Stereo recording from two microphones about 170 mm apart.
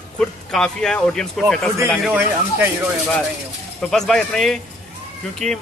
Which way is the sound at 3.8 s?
5° left (ahead or behind).